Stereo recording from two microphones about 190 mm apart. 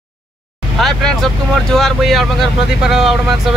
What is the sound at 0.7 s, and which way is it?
Speech, centre (ahead or behind).